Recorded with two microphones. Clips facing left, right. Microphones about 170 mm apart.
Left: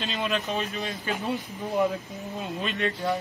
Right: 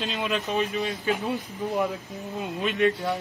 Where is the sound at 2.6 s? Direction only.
10° right (ahead or behind).